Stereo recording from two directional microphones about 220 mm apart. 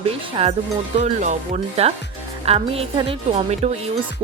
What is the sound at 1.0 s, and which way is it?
Speech, 35° right (ahead or behind).